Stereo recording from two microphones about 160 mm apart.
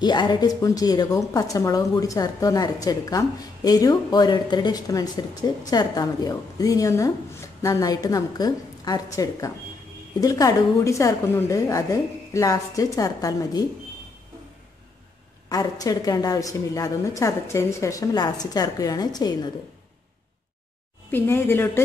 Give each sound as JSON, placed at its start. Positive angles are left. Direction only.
{"t": 0.0, "sound": "a woman's voice", "side_deg": 25}
{"t": 15.4, "sound": "a woman's voice", "side_deg": 20}
{"t": 21.1, "sound": "speech", "side_deg": 15}